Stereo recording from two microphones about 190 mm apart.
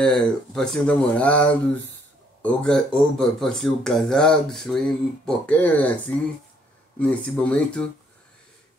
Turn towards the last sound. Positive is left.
turn(degrees=5)  # may be behind; listen again after turning